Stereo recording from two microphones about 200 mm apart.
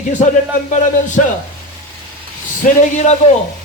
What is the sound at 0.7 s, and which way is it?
Speech, 40° left (ahead or behind).